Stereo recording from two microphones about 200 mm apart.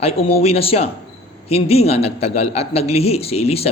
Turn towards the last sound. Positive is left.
turn(degrees=30)  # may be behind; listen again after turning